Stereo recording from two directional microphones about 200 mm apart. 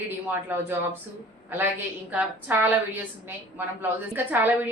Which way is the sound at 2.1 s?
10° right (ahead or behind).